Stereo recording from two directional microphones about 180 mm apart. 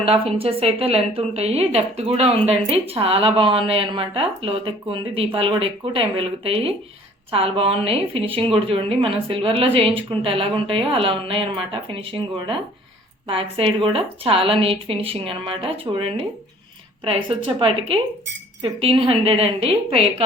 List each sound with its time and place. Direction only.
0.0 s a woman's voice: 30° right (ahead or behind)